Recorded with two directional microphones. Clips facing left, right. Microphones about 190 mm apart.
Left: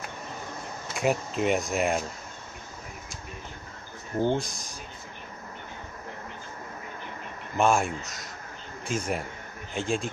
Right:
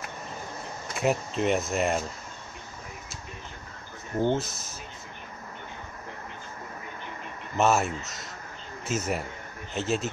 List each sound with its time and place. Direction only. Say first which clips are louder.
0.9 s speech: even; centre (ahead or behind)
4.2 s speech: even; 5° right (ahead or behind)
7.5 s speech: even; 5° right (ahead or behind)